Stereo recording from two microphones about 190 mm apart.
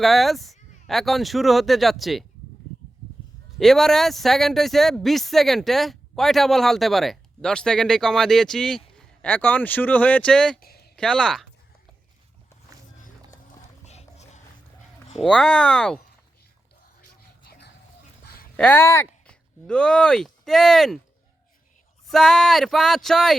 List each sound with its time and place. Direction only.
0.0 s speech: centre (ahead or behind)
3.6 s speech: centre (ahead or behind)
10.6 s a sound: 55° left (ahead or behind)
10.9 s speech: 5° left (ahead or behind)
13.8 s a sound: 35° left (ahead or behind)
15.2 s speech: 5° left (ahead or behind)
17.0 s music: 50° left (ahead or behind)
18.5 s speech: 5° left (ahead or behind)
22.0 s speech: centre (ahead or behind)